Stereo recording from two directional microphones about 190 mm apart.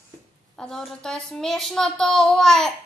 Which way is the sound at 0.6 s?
5° left (ahead or behind).